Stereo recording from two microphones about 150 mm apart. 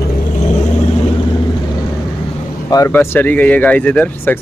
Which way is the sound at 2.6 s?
25° left (ahead or behind).